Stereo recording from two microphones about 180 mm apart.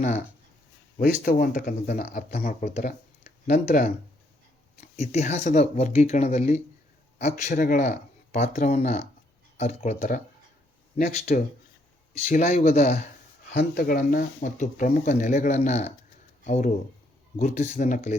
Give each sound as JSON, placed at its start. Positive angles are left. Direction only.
{"t": 0.9, "sound": "speech", "side_deg": 50}
{"t": 13.5, "sound": "speech", "side_deg": 65}